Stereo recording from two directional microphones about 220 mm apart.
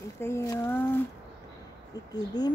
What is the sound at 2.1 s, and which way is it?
Speech, 20° left (ahead or behind).